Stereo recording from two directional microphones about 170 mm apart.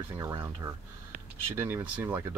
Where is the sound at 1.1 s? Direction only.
55° right (ahead or behind).